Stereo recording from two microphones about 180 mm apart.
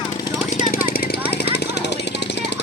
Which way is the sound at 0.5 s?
50° left (ahead or behind).